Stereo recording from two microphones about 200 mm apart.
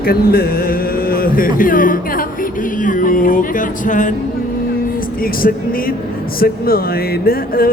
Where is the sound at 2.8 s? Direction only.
40° left (ahead or behind).